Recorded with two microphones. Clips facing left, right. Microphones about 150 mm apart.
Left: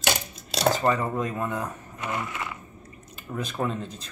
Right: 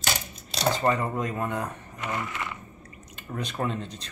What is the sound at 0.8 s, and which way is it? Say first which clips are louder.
Speech: right 1 dB; centre (ahead or behind).